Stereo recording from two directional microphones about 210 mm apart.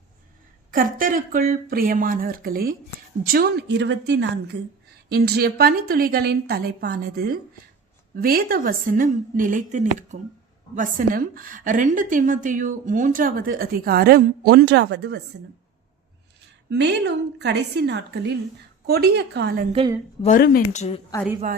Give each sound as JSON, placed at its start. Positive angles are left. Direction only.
{"t": 0.7, "sound": "a woman's voice", "side_deg": -40}
{"t": 16.6, "sound": "a woman's voice", "side_deg": -55}
{"t": 20.2, "sound": "speech", "side_deg": 40}